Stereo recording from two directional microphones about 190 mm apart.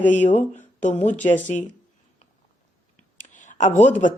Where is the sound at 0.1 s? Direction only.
40° left (ahead or behind).